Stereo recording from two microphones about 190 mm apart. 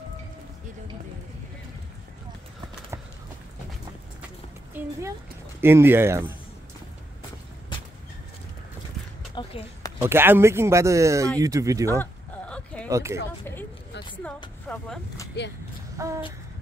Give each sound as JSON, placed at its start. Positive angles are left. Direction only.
{"t": 4.7, "sound": "speech", "side_deg": -10}
{"t": 9.3, "sound": "a sound", "side_deg": 25}
{"t": 10.0, "sound": "speech", "side_deg": -10}
{"t": 12.0, "sound": "a sound", "side_deg": 5}
{"t": 12.9, "sound": "speech", "side_deg": -15}
{"t": 14.7, "sound": "speech", "side_deg": 5}
{"t": 15.4, "sound": "speech", "side_deg": 60}
{"t": 16.0, "sound": "speech", "side_deg": -15}